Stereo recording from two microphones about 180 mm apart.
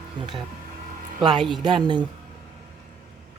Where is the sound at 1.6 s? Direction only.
25° right (ahead or behind).